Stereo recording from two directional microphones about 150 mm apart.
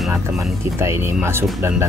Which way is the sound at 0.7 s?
15° right (ahead or behind).